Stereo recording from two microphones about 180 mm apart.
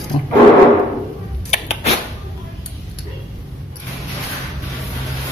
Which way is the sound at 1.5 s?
35° left (ahead or behind).